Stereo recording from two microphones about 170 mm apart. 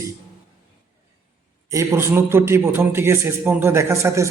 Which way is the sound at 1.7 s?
15° right (ahead or behind).